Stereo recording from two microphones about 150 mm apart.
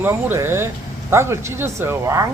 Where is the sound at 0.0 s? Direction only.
15° right (ahead or behind).